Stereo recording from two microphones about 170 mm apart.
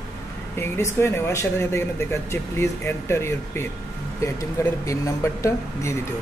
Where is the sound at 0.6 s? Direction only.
15° left (ahead or behind).